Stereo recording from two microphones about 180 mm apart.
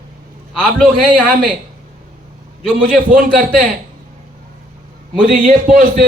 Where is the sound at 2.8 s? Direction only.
50° right (ahead or behind).